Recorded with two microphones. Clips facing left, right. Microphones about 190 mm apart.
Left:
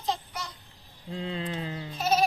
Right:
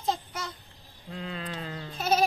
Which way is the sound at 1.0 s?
25° left (ahead or behind).